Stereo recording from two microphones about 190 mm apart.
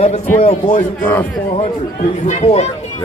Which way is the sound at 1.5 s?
30° left (ahead or behind).